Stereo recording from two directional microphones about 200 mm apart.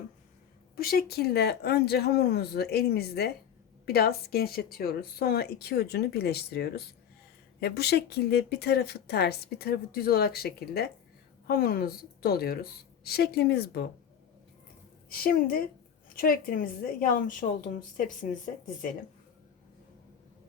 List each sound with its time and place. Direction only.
0.8 s speech: 50° left (ahead or behind)
15.1 s speech: 45° left (ahead or behind)